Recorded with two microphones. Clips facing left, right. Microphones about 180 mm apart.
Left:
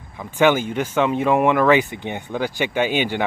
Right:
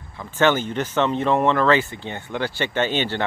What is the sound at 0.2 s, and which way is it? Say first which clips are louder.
Speech: left 2 dB; 10° left (ahead or behind).